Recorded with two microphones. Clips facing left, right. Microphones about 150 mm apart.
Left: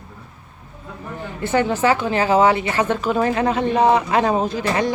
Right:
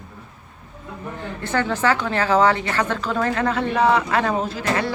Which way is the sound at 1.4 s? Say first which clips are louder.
Left 4 dB; 15° left (ahead or behind).